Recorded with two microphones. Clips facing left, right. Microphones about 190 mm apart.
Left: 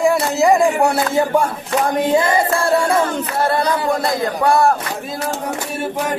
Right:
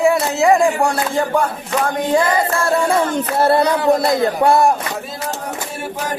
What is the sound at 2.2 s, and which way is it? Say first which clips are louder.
Chant: even; 25° left (ahead or behind).